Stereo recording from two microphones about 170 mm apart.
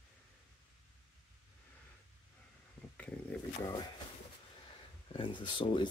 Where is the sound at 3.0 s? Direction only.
10° left (ahead or behind).